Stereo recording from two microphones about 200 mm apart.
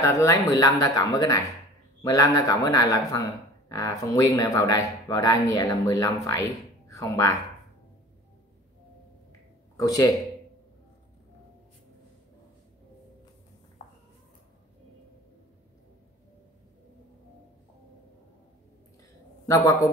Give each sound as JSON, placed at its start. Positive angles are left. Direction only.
{"t": 0.0, "sound": "speech", "side_deg": 15}
{"t": 9.8, "sound": "speech", "side_deg": 20}
{"t": 13.8, "sound": "a sound", "side_deg": 35}
{"t": 19.4, "sound": "speech", "side_deg": 15}